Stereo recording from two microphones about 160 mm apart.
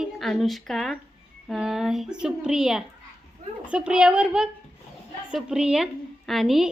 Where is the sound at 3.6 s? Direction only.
5° right (ahead or behind).